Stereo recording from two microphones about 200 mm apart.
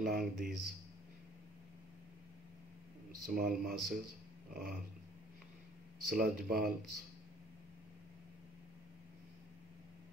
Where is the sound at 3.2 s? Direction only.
45° right (ahead or behind).